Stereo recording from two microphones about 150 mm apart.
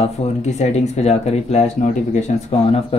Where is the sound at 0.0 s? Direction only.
50° left (ahead or behind).